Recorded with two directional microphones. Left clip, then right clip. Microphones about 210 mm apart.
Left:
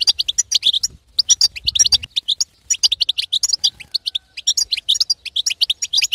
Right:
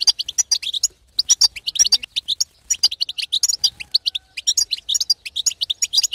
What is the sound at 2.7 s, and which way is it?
Bird, 30° left (ahead or behind).